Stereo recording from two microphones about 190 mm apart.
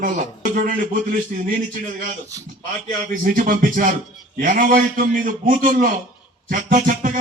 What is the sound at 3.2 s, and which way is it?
A man's voice, 45° right (ahead or behind).